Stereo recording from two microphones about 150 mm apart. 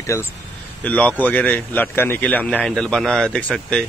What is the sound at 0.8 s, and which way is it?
A man's voice, 10° left (ahead or behind).